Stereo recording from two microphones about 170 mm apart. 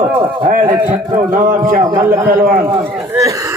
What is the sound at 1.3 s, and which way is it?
Speech, 55° right (ahead or behind).